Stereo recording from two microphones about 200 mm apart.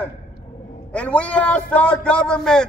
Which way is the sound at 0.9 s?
5° left (ahead or behind).